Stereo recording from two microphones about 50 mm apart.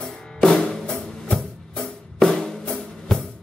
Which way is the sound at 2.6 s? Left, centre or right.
Left.